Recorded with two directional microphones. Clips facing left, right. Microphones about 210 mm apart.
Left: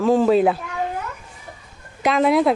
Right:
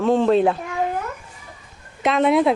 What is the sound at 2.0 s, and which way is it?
Speech, centre (ahead or behind).